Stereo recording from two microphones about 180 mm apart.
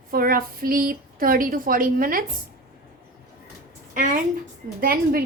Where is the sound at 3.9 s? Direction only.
50° right (ahead or behind).